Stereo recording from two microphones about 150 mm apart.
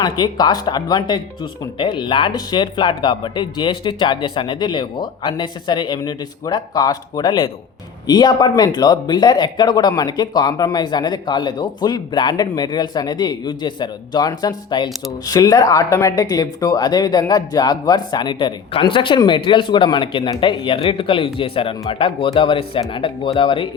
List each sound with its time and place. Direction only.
0.0 s speech: 25° left (ahead or behind)